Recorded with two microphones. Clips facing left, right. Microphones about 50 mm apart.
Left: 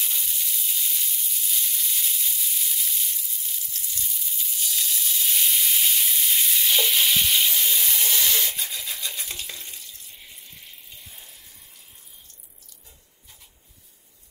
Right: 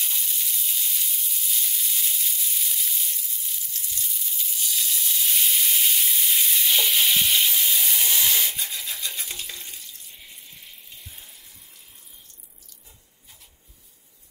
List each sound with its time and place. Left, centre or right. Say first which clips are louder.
0.0 s sizzle: even; centre